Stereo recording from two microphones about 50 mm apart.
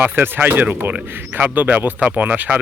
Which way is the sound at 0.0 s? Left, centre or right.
Right.